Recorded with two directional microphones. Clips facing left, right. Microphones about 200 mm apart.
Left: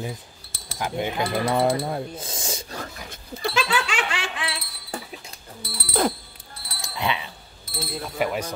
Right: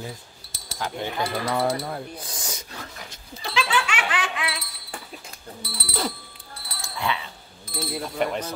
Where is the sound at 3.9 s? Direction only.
30° left (ahead or behind).